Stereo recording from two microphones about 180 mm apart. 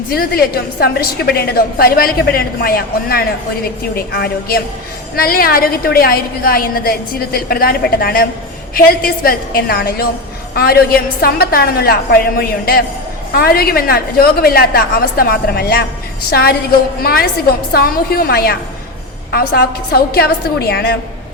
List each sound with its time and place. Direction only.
0.1 s a woman's voice: 60° left (ahead or behind)